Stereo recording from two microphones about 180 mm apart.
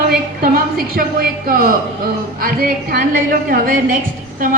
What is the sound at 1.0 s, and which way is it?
A woman's voice, 55° right (ahead or behind).